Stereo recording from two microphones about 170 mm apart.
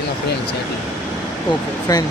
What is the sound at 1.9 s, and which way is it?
Speech, 20° left (ahead or behind).